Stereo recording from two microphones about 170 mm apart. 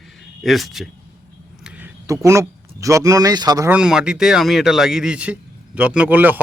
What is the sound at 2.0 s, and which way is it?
Speech, 20° right (ahead or behind).